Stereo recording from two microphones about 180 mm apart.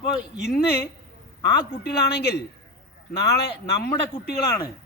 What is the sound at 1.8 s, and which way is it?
Speech, 65° left (ahead or behind).